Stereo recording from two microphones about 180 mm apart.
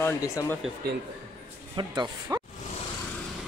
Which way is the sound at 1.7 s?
25° right (ahead or behind).